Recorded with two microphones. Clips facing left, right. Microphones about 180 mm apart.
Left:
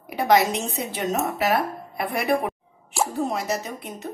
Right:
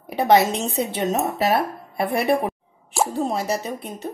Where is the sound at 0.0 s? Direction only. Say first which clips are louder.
Right 3 dB; 30° right (ahead or behind).